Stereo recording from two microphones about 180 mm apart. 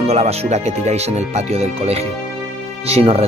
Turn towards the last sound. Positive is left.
turn(degrees=-35)  # may be behind; listen again after turning